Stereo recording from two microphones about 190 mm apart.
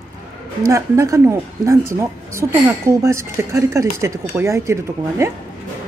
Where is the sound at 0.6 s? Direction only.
15° right (ahead or behind).